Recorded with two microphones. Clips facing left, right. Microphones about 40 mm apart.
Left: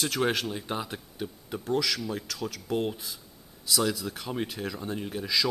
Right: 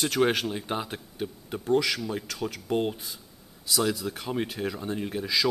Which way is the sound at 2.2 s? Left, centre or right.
Centre.